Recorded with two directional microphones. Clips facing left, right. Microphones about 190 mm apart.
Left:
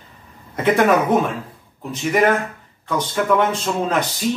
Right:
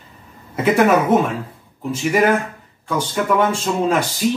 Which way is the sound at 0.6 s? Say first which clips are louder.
Right 1 dB; 5° right (ahead or behind).